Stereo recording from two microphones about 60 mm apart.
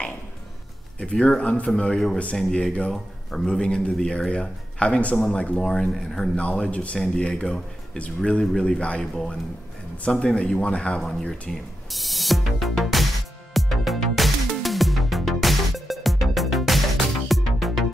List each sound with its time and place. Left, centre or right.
0.9 s speech: centre
5.1 s speech: centre
5.4 s speech: left
5.7 s speech: centre
6.3 s speech: centre
10.0 s speech: centre
11.0 s speech: centre
11.9 s music: centre